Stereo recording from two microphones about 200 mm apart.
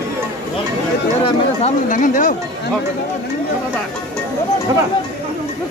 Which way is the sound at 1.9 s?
40° left (ahead or behind).